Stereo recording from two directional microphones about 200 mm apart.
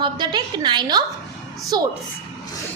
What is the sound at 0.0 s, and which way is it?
A woman's voice, 20° right (ahead or behind).